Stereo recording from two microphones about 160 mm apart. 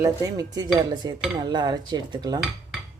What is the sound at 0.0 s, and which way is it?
Dishes, 20° right (ahead or behind).